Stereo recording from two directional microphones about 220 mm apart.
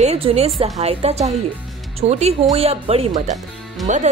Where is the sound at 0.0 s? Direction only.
30° right (ahead or behind).